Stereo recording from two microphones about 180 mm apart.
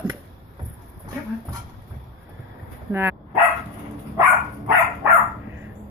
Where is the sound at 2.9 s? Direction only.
15° right (ahead or behind).